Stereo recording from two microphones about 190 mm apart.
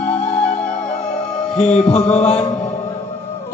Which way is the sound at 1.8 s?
30° left (ahead or behind).